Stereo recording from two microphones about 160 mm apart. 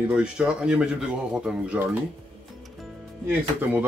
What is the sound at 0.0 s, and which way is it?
Speech, 5° right (ahead or behind).